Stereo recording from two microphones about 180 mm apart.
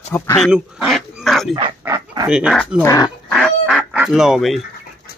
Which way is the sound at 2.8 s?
20° left (ahead or behind).